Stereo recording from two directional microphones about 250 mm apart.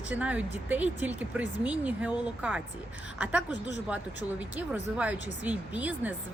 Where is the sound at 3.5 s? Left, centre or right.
Left.